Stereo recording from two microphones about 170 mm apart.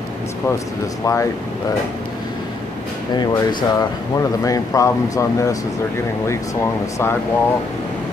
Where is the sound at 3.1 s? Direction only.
25° left (ahead or behind).